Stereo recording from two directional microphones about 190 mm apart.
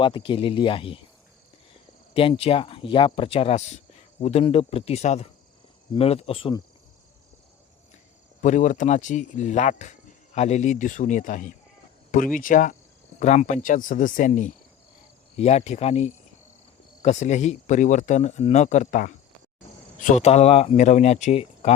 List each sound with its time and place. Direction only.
0.0 s speech: 25° left (ahead or behind)
2.1 s speech: 30° left (ahead or behind)
8.4 s speech: 40° left (ahead or behind)